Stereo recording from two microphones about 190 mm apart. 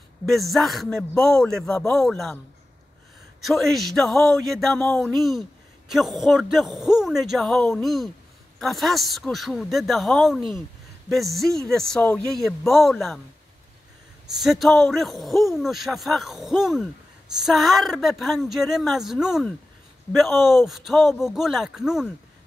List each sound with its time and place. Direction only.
0.3 s a man's voice: centre (ahead or behind)
3.3 s a man's voice: centre (ahead or behind)
14.2 s a man's voice: centre (ahead or behind)